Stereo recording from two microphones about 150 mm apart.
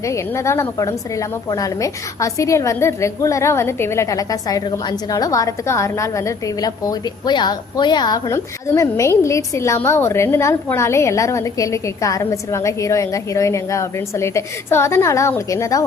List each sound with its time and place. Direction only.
0.0 s a woman's voice: 20° left (ahead or behind)